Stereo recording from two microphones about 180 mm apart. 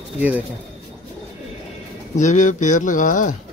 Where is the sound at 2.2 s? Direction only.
45° left (ahead or behind).